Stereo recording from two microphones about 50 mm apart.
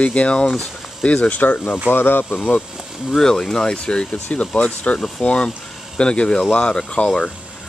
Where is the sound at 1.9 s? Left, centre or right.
Left.